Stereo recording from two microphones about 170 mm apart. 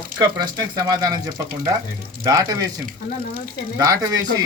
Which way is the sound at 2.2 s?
20° right (ahead or behind).